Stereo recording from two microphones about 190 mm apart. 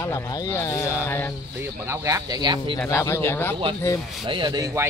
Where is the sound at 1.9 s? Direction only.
15° right (ahead or behind).